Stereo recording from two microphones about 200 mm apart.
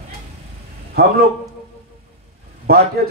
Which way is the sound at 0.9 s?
50° right (ahead or behind).